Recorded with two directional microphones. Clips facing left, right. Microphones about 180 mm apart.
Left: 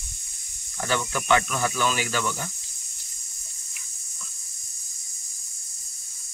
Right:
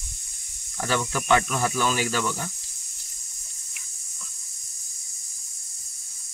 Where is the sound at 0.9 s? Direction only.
35° right (ahead or behind).